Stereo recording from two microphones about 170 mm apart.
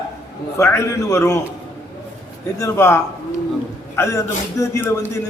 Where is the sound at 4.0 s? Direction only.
15° left (ahead or behind).